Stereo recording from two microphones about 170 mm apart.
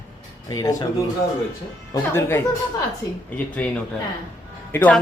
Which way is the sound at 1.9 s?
15° left (ahead or behind).